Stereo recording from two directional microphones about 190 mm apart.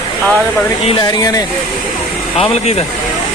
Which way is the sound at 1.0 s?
20° left (ahead or behind).